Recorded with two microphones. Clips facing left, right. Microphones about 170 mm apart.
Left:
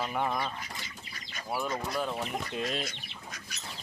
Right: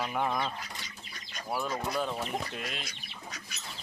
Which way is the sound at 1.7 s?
Centre (ahead or behind).